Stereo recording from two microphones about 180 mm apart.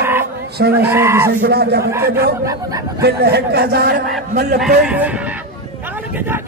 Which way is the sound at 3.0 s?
65° right (ahead or behind).